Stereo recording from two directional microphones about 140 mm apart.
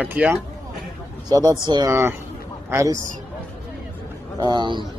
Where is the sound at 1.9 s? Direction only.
20° right (ahead or behind).